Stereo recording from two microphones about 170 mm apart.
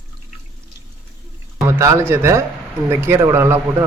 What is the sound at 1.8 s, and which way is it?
Speech, 15° right (ahead or behind).